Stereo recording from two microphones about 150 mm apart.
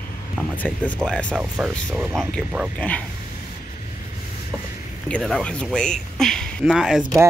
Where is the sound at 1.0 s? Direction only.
10° right (ahead or behind).